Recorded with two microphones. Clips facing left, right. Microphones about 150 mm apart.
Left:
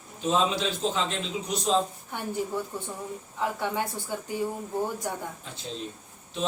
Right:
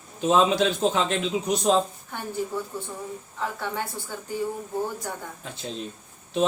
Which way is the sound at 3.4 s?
15° left (ahead or behind).